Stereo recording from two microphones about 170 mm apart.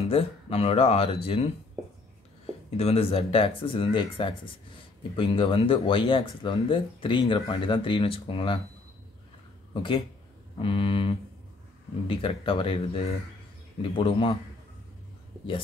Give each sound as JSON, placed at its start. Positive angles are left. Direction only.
{"t": 0.0, "sound": "speech", "side_deg": 35}
{"t": 2.4, "sound": "speech", "side_deg": 35}
{"t": 9.8, "sound": "speech", "side_deg": 30}